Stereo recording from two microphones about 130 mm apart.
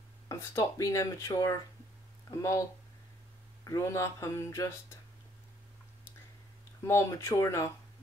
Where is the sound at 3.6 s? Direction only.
25° left (ahead or behind).